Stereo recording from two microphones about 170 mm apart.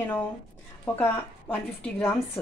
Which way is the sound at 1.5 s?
5° left (ahead or behind).